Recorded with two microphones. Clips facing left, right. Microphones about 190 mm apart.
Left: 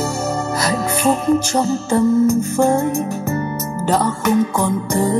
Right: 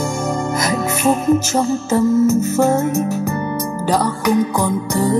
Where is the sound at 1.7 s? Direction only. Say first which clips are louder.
Even; 5° right (ahead or behind).